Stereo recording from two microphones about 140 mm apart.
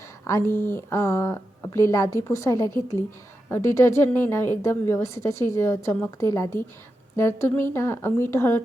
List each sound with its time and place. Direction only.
0.3 s a woman's voice: 20° left (ahead or behind)